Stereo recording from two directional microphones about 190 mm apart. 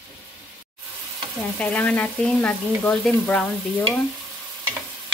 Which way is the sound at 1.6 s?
10° left (ahead or behind).